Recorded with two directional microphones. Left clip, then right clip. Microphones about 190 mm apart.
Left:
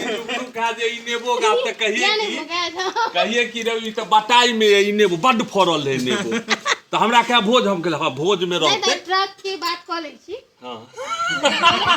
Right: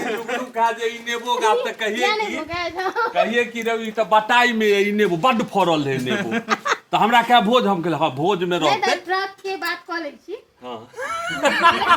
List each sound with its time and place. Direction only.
0.0 s a man's voice: 10° left (ahead or behind)
2.5 s a child's voice: 30° right (ahead or behind)
3.2 s a child's voice: 15° right (ahead or behind)
3.9 s speech: 35° right (ahead or behind)
6.5 s speech: 55° right (ahead or behind)
8.3 s a child's voice: 30° right (ahead or behind)
8.9 s a child's voice: 15° right (ahead or behind)
11.0 s speech: centre (ahead or behind)